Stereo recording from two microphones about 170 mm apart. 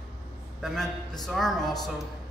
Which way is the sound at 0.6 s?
Centre (ahead or behind).